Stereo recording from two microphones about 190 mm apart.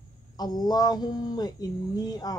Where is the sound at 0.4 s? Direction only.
20° left (ahead or behind).